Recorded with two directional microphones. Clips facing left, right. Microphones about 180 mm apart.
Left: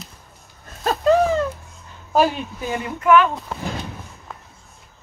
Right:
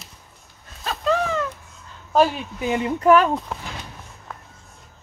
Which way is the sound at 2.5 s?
15° right (ahead or behind).